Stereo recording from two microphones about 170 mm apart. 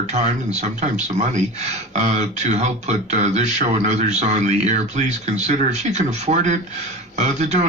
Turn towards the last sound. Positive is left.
turn(degrees=-45)  # may be behind; listen again after turning